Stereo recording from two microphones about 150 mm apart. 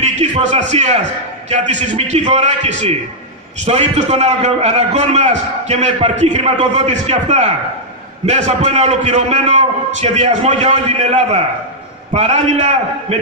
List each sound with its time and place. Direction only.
0.0 s a man's voice: 50° right (ahead or behind)